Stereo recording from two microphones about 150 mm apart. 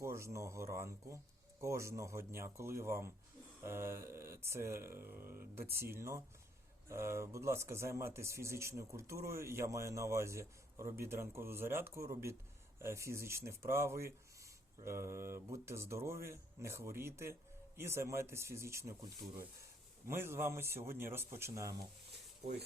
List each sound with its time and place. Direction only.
0.0 s speech: 20° right (ahead or behind)
20.1 s speech: 15° right (ahead or behind)